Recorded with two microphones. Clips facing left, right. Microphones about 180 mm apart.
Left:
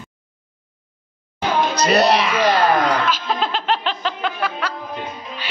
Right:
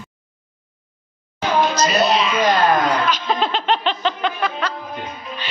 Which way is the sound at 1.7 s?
60° left (ahead or behind).